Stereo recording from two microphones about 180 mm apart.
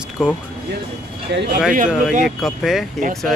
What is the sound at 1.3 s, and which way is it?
Speech, 75° right (ahead or behind).